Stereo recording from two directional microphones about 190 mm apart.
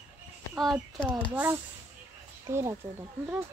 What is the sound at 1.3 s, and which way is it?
Speech, 15° right (ahead or behind).